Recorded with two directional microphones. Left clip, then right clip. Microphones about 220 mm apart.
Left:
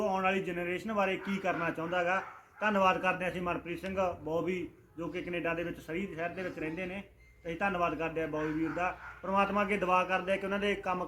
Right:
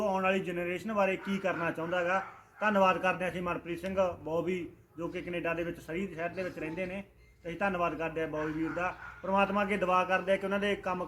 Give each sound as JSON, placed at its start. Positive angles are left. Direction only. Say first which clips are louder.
{"t": 0.0, "sound": "a man's voice", "louder": "right 1 dB", "side_deg": 0}